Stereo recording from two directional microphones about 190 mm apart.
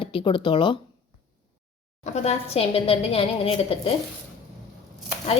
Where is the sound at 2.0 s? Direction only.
35° left (ahead or behind).